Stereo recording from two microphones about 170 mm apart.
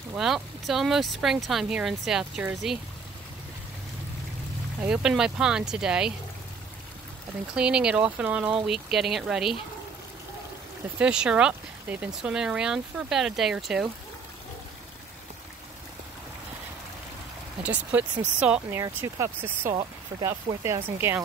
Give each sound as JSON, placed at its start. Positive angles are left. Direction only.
{"t": 0.1, "sound": "speech", "side_deg": 0}
{"t": 4.7, "sound": "speech", "side_deg": -5}
{"t": 7.5, "sound": "speech", "side_deg": -5}
{"t": 11.0, "sound": "speech", "side_deg": -5}
{"t": 17.6, "sound": "speech", "side_deg": -5}